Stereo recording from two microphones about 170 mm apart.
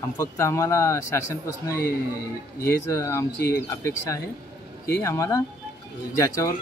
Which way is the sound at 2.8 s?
15° left (ahead or behind).